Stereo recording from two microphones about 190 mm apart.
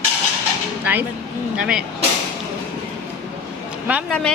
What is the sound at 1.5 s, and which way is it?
Speech, 5° right (ahead or behind).